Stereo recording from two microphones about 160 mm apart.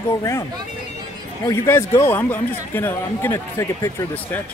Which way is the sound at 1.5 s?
20° left (ahead or behind).